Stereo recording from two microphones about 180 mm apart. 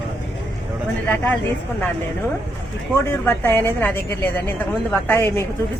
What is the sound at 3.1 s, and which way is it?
Speech, 10° left (ahead or behind).